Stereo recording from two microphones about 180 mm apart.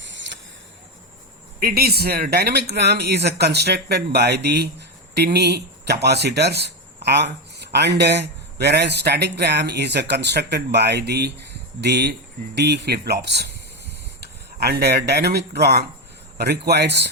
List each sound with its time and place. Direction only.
1.5 s speech: 55° right (ahead or behind)